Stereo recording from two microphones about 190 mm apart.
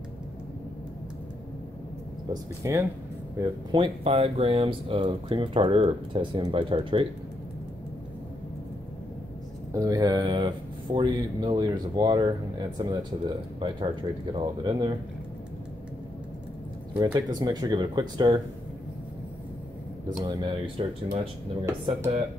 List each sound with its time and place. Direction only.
2.6 s speech: 15° right (ahead or behind)
3.3 s speech: 25° right (ahead or behind)
9.7 s speech: 15° right (ahead or behind)
17.0 s speech: 25° right (ahead or behind)
20.2 s speech: 25° right (ahead or behind)
21.6 s speech: 15° right (ahead or behind)